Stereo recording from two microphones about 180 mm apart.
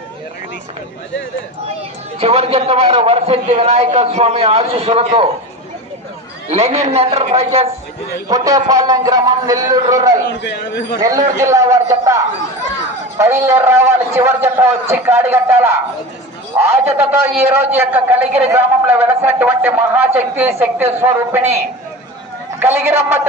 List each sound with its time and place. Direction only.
2.1 s a man's voice: 35° right (ahead or behind)
6.5 s a man's voice: 35° right (ahead or behind)
8.3 s a man's voice: 20° right (ahead or behind)
10.2 s a man's voice: 70° left (ahead or behind)
11.0 s a man's voice: 20° right (ahead or behind)
13.4 s a man's voice: 15° right (ahead or behind)
22.6 s a man's voice: 10° right (ahead or behind)